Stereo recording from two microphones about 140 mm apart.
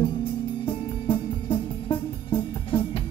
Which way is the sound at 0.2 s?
40° left (ahead or behind).